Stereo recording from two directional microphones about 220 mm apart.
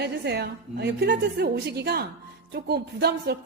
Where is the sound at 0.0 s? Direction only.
50° right (ahead or behind).